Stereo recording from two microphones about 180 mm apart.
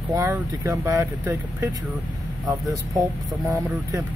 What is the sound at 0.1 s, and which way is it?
Speech, 15° right (ahead or behind).